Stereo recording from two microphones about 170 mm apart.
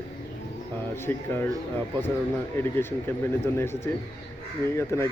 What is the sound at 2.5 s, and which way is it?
Speech, 15° left (ahead or behind).